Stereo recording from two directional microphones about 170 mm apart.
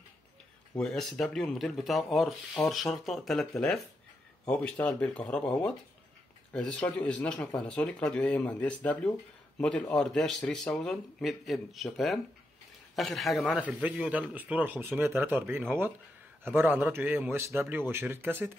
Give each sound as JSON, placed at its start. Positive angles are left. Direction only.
{"t": 0.7, "sound": "a man's voice", "side_deg": 5}